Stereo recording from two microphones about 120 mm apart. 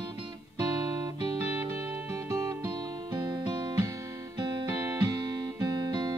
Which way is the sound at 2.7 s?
35° right (ahead or behind).